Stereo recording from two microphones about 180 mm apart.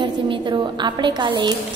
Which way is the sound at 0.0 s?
25° right (ahead or behind).